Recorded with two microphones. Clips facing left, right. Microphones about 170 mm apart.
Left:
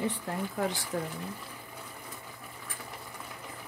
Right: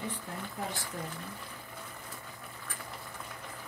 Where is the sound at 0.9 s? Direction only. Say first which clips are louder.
Left 8 dB; 90° left.